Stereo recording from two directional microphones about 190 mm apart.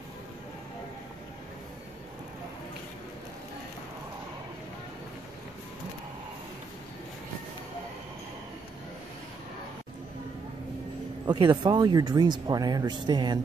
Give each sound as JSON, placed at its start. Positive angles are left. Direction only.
{"t": 11.2, "sound": "speech", "side_deg": -25}